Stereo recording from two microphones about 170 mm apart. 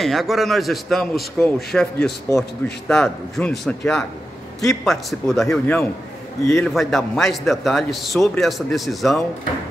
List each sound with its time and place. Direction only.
0.0 s a man's voice: centre (ahead or behind)
6.4 s a man's voice: 15° left (ahead or behind)
6.7 s a man's voice: centre (ahead or behind)